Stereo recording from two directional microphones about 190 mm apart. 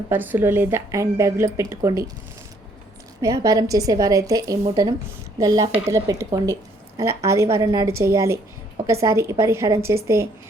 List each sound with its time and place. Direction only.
0.1 s a woman's voice: 10° right (ahead or behind)
3.2 s a woman's voice: 15° right (ahead or behind)